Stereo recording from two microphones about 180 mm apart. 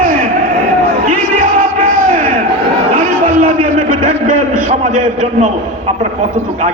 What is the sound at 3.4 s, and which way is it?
A man's voice, 45° right (ahead or behind).